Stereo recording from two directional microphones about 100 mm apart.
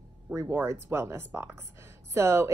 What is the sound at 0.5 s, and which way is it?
A woman's voice, 20° right (ahead or behind).